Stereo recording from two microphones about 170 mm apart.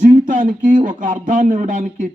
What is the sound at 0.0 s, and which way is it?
Speech, 50° right (ahead or behind).